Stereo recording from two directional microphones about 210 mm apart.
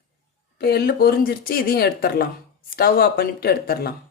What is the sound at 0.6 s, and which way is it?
Speech, 50° left (ahead or behind).